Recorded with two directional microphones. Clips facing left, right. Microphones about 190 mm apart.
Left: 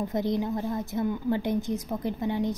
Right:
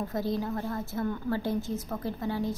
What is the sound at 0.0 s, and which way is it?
A woman's voice, 20° left (ahead or behind).